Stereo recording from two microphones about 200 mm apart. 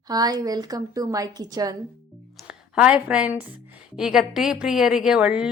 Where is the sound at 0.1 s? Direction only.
20° right (ahead or behind).